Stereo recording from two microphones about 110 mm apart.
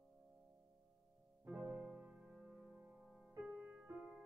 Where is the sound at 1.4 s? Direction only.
20° right (ahead or behind).